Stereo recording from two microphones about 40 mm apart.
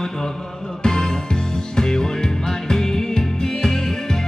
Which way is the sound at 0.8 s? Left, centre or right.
Centre.